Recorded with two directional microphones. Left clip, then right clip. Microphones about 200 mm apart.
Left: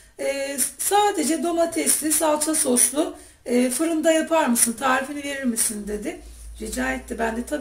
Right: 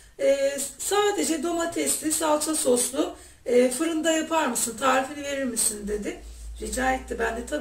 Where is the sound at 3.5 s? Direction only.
40° left (ahead or behind).